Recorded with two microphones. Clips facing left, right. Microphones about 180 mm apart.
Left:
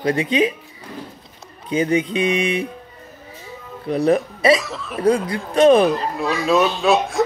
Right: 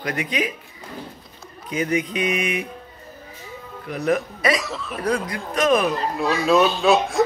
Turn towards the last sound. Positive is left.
turn(degrees=0)  # may be behind; listen again after turning